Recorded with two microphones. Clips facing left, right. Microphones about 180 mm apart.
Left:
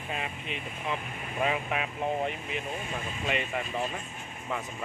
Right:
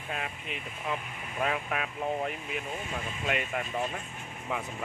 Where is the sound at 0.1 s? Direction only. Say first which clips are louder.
Left 1 dB; centre (ahead or behind).